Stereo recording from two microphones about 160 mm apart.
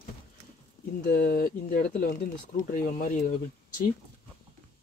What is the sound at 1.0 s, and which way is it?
Speech, 65° left (ahead or behind).